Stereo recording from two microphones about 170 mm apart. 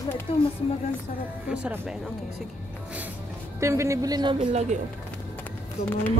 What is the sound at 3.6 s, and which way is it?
Speech, 15° right (ahead or behind).